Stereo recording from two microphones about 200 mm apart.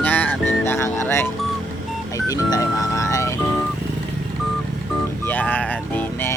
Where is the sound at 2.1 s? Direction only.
15° left (ahead or behind).